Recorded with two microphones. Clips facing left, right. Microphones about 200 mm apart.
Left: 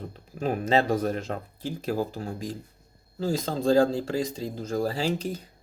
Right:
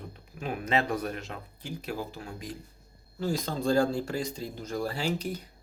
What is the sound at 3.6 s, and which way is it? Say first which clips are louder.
Speech: left 4 dB; 90° left.